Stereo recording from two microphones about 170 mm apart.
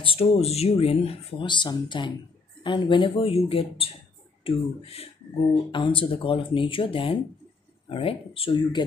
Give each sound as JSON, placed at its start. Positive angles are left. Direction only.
{"t": 0.0, "sound": "speech", "side_deg": 35}